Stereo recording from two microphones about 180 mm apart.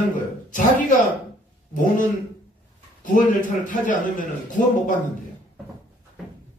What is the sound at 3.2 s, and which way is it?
A man's voice, 45° left (ahead or behind).